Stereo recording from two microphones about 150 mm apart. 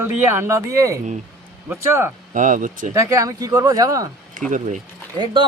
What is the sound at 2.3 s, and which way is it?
Speech, 60° right (ahead or behind).